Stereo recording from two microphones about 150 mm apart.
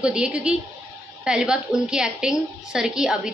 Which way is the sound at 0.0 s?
5° right (ahead or behind).